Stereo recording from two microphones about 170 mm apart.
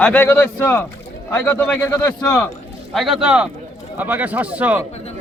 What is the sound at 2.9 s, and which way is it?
Speech, centre (ahead or behind).